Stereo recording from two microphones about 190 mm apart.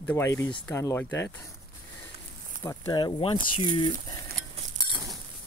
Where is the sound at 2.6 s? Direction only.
20° left (ahead or behind).